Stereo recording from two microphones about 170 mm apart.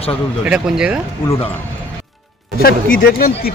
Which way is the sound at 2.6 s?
60° left (ahead or behind).